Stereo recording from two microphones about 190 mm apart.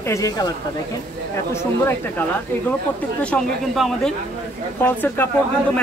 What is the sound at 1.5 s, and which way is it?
A woman's voice, 10° left (ahead or behind).